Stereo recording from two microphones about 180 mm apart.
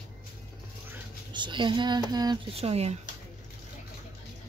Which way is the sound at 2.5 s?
35° right (ahead or behind).